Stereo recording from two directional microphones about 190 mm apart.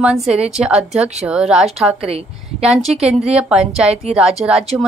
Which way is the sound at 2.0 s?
30° right (ahead or behind).